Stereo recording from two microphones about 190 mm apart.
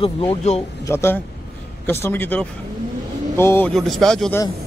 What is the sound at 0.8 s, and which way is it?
Speech, 15° left (ahead or behind).